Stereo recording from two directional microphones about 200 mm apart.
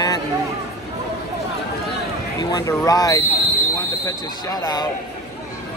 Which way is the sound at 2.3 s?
20° left (ahead or behind).